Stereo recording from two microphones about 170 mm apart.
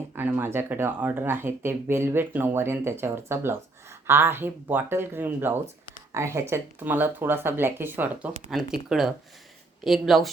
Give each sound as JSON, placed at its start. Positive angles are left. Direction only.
{"t": 0.2, "sound": "speech", "side_deg": -10}